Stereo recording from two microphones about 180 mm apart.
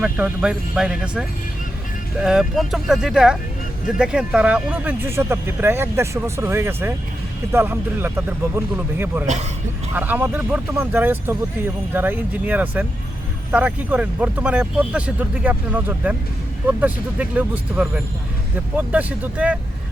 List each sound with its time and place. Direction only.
0.0 s speech: 5° right (ahead or behind)
9.2 s speech: 40° right (ahead or behind)
9.9 s speech: 10° right (ahead or behind)